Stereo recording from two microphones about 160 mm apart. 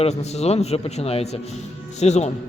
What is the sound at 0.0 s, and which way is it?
A man's voice, 45° left (ahead or behind).